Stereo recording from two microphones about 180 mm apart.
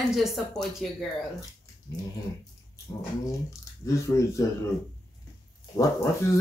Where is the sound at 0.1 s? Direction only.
Centre (ahead or behind).